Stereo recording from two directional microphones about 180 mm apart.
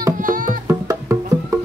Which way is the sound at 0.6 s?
15° right (ahead or behind).